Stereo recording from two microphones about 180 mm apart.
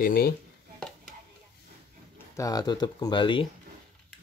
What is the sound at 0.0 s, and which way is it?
Speech, 55° left (ahead or behind).